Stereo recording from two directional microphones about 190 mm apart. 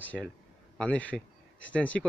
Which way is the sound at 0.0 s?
10° left (ahead or behind).